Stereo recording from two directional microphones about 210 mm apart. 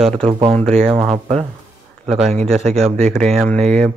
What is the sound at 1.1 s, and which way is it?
Speech, 30° right (ahead or behind).